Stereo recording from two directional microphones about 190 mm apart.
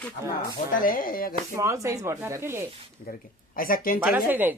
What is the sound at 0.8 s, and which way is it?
Speech, 45° left (ahead or behind).